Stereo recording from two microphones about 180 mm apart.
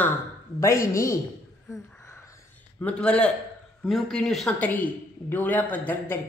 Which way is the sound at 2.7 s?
5° left (ahead or behind).